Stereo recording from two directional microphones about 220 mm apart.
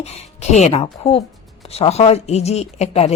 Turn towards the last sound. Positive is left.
turn(degrees=30)  # may be behind; listen again after turning